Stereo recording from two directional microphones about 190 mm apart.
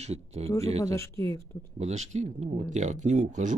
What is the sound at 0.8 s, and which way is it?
Speech, 15° left (ahead or behind).